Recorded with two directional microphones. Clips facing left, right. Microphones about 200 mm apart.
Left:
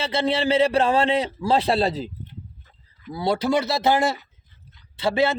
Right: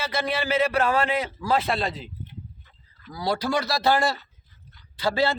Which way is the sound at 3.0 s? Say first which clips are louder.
Left 4 dB; 25° left (ahead or behind).